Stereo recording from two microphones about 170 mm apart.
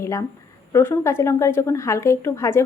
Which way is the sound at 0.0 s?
20° left (ahead or behind).